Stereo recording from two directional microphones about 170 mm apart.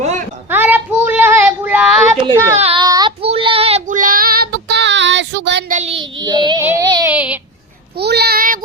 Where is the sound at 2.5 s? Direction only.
35° right (ahead or behind).